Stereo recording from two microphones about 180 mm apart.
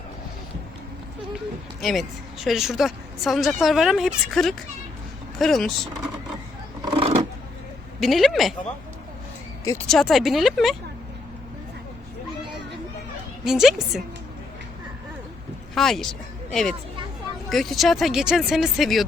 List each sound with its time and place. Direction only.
1.8 s a woman's voice: centre (ahead or behind)
6.9 s a sound: 30° right (ahead or behind)
7.9 s a woman's voice: centre (ahead or behind)
9.9 s a woman's voice: centre (ahead or behind)
13.4 s a woman's voice: centre (ahead or behind)
15.7 s a woman's voice: centre (ahead or behind)